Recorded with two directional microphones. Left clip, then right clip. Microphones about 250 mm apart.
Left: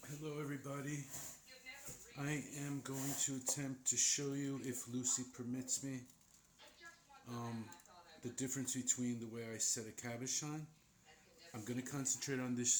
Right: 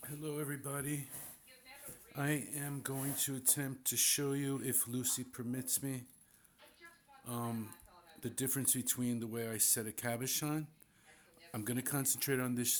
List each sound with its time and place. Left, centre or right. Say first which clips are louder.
0.0 s speech: right 4 dB; right
2.1 s speech: right 6 dB; right
7.3 s speech: right 6 dB; right